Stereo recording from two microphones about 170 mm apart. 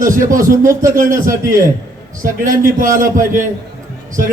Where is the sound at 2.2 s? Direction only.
55° right (ahead or behind).